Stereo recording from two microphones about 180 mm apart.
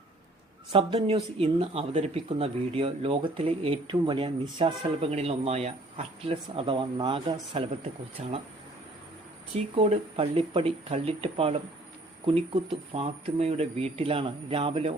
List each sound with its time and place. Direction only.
0.7 s speech: 30° right (ahead or behind)
8.2 s speech: 40° right (ahead or behind)
9.7 s speech: 30° right (ahead or behind)
12.9 s speech: 35° right (ahead or behind)